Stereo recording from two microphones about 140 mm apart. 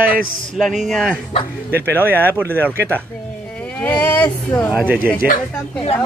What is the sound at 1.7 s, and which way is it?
Speech, 15° right (ahead or behind).